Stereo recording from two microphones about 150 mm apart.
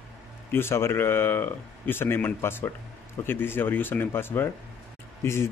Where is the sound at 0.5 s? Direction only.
15° left (ahead or behind).